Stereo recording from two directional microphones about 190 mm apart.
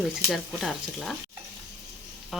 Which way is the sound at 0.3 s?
Centre (ahead or behind).